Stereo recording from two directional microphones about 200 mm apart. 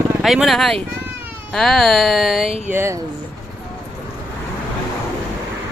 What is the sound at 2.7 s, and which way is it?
Speech, 10° right (ahead or behind).